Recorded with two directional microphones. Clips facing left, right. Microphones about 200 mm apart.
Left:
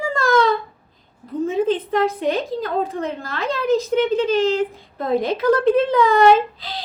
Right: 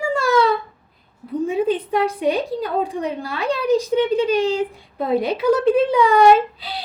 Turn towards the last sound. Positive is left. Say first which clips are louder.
# right 1 dB
turn(degrees=-10)  # may be behind; listen again after turning